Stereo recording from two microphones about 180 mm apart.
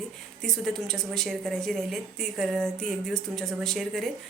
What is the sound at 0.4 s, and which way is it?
A woman's voice, centre (ahead or behind).